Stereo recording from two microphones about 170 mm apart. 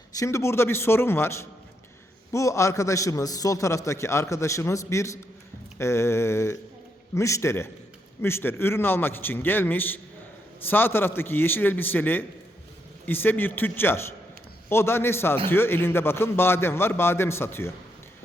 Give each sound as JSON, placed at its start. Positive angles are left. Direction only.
{"t": 0.2, "sound": "a man's voice", "side_deg": 15}